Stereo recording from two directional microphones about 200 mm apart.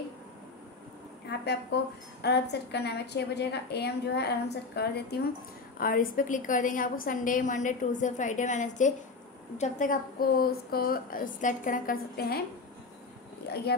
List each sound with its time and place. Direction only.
1.4 s a woman's voice: 55° left (ahead or behind)
5.8 s a woman's voice: 45° left (ahead or behind)